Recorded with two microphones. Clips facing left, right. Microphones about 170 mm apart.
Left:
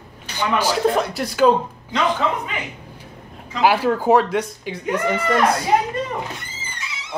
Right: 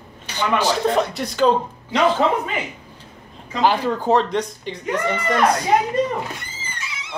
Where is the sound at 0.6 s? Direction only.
5° left (ahead or behind).